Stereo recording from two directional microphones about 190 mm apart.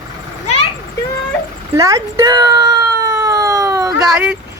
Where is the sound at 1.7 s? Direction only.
15° right (ahead or behind).